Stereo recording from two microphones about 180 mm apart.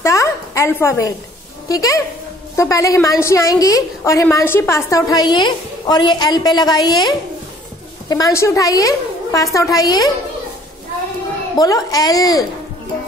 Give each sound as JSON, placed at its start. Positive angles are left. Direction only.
{"t": 0.0, "sound": "a sound", "side_deg": 15}
{"t": 1.7, "sound": "a woman's voice", "side_deg": 20}
{"t": 11.5, "sound": "a woman's voice", "side_deg": 20}